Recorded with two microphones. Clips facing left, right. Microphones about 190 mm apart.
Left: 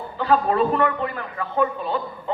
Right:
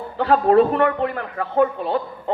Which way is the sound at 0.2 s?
65° right (ahead or behind).